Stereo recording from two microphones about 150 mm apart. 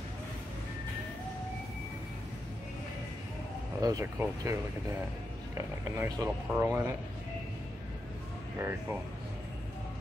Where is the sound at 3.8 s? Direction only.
20° right (ahead or behind).